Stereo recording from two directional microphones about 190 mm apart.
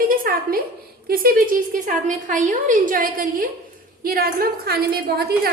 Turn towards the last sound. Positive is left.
turn(degrees=-55)  # may be behind; listen again after turning